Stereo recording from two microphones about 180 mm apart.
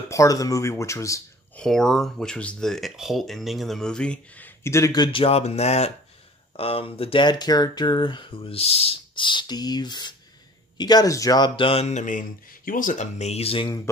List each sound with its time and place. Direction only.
0.1 s speech: 20° left (ahead or behind)
1.6 s speech: centre (ahead or behind); by 13.8 s 25° left (ahead or behind)